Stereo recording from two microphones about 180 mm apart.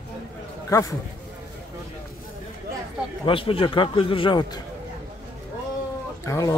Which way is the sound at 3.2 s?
30° left (ahead or behind).